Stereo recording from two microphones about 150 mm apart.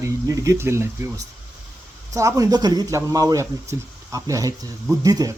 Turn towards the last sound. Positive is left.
turn(degrees=-25)  # may be behind; listen again after turning